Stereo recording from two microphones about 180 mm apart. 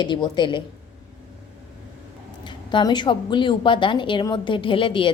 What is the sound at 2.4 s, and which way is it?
A woman's voice, 25° left (ahead or behind).